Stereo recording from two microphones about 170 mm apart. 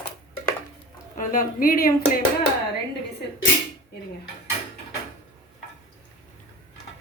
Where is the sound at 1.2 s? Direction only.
55° left (ahead or behind).